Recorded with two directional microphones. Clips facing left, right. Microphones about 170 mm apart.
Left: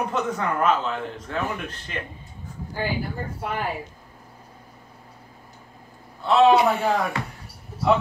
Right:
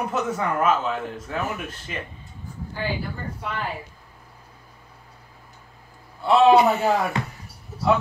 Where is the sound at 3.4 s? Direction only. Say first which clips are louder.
Left 2 dB; 50° left (ahead or behind).